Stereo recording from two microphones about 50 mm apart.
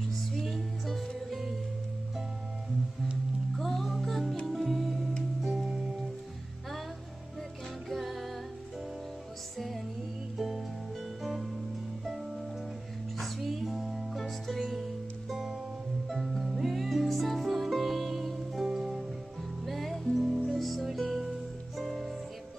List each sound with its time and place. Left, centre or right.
0.1 s music: centre
3.5 s music: centre
5.4 s music: centre
7.9 s music: centre
9.6 s music: centre
19.6 s music: centre